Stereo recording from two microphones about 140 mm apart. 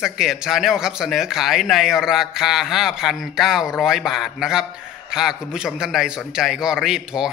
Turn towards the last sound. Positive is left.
turn(degrees=-5)  # may be behind; listen again after turning